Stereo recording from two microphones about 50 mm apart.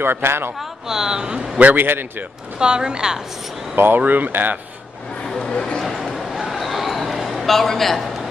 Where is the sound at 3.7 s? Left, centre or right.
Right.